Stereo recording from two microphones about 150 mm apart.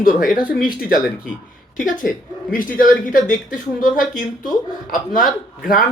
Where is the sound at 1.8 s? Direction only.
60° left (ahead or behind).